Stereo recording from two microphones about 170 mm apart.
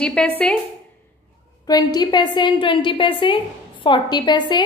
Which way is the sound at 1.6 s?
25° left (ahead or behind).